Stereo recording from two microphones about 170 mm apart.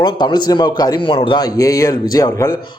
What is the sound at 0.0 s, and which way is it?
A man's voice, 25° left (ahead or behind).